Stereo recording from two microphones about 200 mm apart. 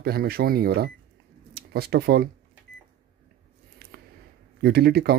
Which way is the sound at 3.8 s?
50° right (ahead or behind).